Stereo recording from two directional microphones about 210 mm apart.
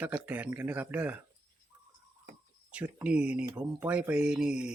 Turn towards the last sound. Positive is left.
turn(degrees=-5)  # may be behind; listen again after turning